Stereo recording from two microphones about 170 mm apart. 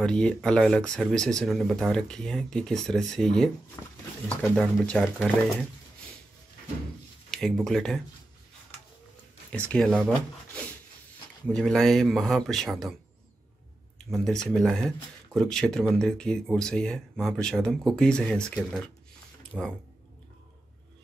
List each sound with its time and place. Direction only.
0.0 s speech: 5° left (ahead or behind)
3.8 s speech: 20° left (ahead or behind)
4.3 s speech: 5° left (ahead or behind)
7.2 s speech: centre (ahead or behind)
9.7 s speech: 5° left (ahead or behind)
14.1 s speech: 5° left (ahead or behind)